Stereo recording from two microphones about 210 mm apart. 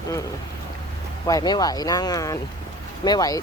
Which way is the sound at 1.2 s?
20° left (ahead or behind).